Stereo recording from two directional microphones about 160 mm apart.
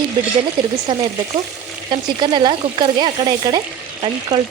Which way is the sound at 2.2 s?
30° right (ahead or behind).